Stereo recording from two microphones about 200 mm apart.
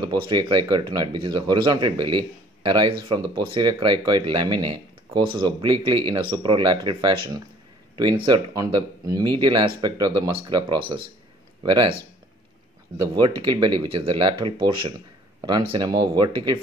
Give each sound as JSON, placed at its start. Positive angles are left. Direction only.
{"t": 0.1, "sound": "speech", "side_deg": -20}